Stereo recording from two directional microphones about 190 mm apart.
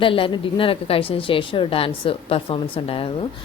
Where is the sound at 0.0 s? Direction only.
25° left (ahead or behind).